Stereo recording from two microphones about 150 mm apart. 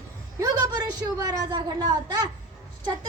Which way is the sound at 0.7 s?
30° right (ahead or behind).